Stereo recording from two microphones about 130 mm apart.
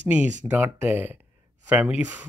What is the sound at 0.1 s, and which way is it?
Speech, 15° right (ahead or behind).